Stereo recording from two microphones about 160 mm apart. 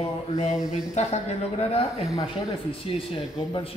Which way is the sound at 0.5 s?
5° right (ahead or behind).